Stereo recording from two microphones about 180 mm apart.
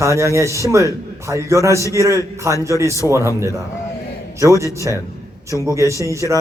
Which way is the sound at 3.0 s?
5° left (ahead or behind).